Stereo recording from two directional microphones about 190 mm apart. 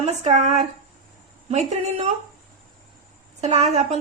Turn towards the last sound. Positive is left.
turn(degrees=-35)  # may be behind; listen again after turning